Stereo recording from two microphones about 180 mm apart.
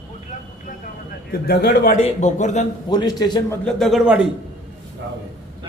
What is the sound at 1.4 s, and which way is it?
Speech, 60° left (ahead or behind).